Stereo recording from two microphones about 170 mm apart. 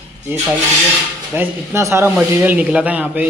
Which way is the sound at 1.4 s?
15° right (ahead or behind).